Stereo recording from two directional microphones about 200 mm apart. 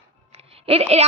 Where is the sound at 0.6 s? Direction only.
30° right (ahead or behind).